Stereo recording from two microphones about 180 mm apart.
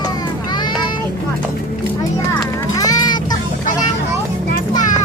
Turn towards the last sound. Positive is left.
turn(degrees=20)  # may be behind; listen again after turning